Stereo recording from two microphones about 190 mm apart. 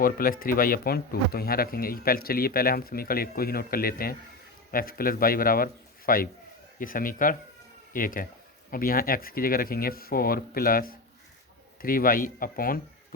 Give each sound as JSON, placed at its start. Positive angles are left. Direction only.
{"t": 0.0, "sound": "speech", "side_deg": 50}